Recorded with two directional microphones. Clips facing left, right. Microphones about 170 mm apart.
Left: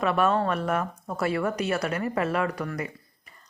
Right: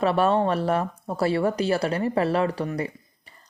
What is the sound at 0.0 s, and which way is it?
Speech, 30° right (ahead or behind).